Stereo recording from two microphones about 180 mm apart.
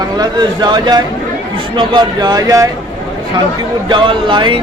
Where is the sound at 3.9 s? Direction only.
25° right (ahead or behind).